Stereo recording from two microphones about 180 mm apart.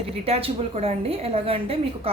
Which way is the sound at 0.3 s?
35° right (ahead or behind).